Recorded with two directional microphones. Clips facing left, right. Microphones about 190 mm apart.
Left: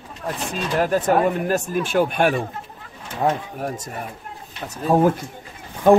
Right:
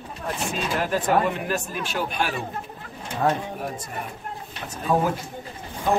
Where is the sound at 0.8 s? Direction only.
45° left (ahead or behind).